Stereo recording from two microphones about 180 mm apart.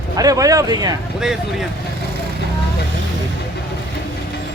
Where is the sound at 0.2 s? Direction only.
20° right (ahead or behind).